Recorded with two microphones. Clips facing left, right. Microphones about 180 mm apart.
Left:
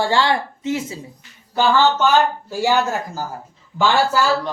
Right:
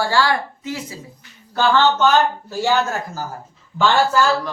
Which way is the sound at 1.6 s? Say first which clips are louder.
Even; 10° left (ahead or behind).